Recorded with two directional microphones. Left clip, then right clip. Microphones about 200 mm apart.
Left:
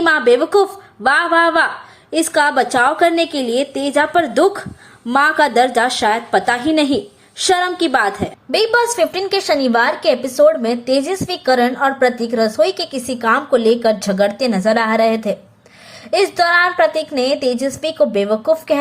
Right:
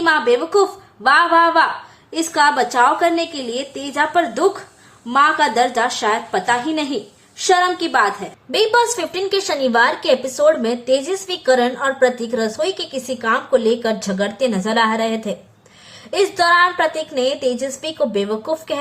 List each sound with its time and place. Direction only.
0.0 s a woman's voice: 20° left (ahead or behind)